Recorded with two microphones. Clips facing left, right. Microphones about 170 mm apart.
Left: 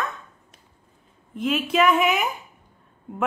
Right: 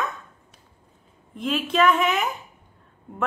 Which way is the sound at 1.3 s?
5° left (ahead or behind).